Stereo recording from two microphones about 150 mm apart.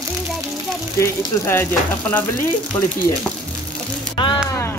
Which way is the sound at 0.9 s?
15° left (ahead or behind).